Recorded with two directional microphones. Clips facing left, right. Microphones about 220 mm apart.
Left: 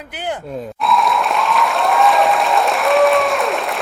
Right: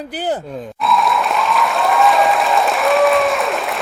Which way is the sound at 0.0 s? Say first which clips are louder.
Right 4 dB; 35° right (ahead or behind).